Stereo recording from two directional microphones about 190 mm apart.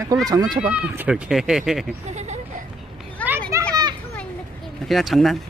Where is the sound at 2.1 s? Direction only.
35° right (ahead or behind).